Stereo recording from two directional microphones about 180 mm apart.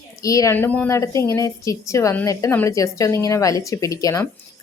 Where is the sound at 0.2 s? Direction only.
20° left (ahead or behind).